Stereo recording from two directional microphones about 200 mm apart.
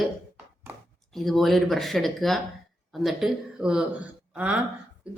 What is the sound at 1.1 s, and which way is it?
A woman's voice, centre (ahead or behind).